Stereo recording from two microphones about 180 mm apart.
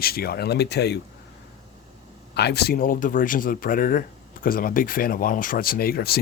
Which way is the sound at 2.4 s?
65° left (ahead or behind).